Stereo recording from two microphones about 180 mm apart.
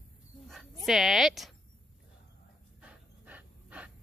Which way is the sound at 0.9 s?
Centre (ahead or behind).